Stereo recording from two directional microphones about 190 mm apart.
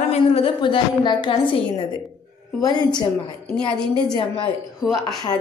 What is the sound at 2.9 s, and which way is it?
A woman's voice, 25° left (ahead or behind).